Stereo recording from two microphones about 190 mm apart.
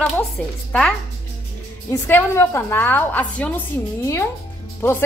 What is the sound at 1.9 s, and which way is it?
A woman's voice, 15° left (ahead or behind).